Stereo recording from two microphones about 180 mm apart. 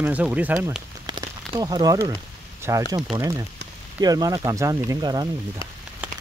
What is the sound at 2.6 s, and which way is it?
Speech, 15° right (ahead or behind).